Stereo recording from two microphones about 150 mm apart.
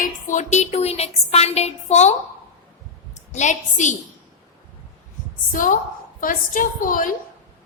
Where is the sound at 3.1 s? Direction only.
50° left (ahead or behind).